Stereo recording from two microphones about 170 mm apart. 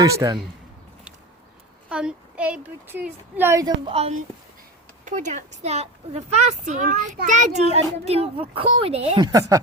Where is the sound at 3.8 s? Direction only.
35° right (ahead or behind).